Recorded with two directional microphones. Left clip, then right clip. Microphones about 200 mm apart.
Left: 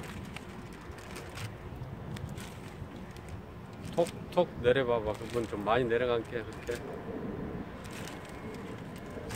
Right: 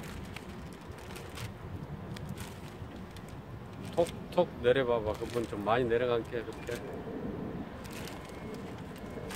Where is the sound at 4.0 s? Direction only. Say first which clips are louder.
Even; 5° left (ahead or behind).